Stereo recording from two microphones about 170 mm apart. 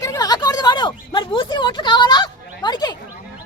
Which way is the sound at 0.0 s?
20° left (ahead or behind).